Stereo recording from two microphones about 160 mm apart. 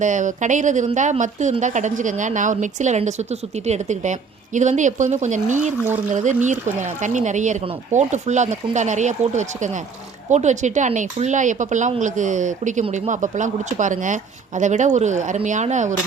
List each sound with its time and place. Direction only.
0.0 s speech: 50° right (ahead or behind)